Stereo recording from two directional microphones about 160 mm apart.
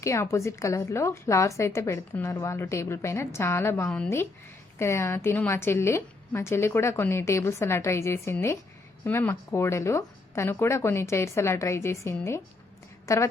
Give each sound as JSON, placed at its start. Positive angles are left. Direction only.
{"t": 0.0, "sound": "a woman's voice", "side_deg": 20}
{"t": 4.8, "sound": "a woman's voice", "side_deg": 15}